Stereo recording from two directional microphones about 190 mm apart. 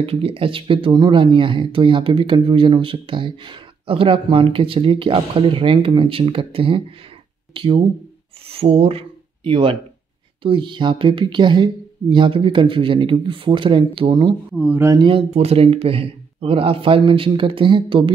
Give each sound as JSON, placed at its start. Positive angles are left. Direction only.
{"t": 0.0, "sound": "speech", "side_deg": -30}
{"t": 14.5, "sound": "speech", "side_deg": -10}